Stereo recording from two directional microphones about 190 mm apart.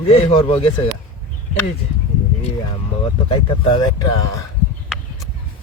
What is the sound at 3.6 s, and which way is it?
Speech, 25° left (ahead or behind).